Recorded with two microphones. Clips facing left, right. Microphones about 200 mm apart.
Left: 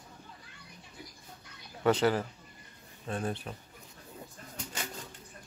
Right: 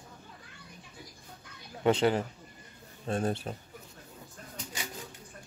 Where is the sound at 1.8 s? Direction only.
20° right (ahead or behind).